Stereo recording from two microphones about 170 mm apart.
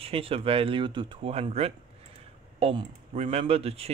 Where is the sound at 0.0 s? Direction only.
35° right (ahead or behind).